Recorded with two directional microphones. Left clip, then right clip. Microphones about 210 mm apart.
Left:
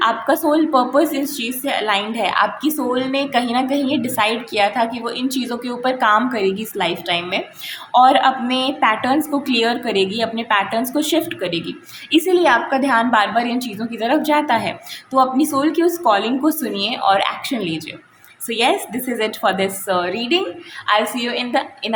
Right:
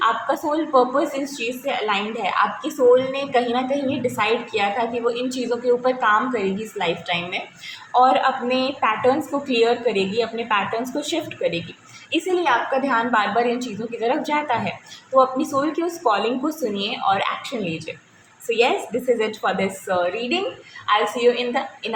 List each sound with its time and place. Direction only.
0.0 s a woman's voice: 55° left (ahead or behind)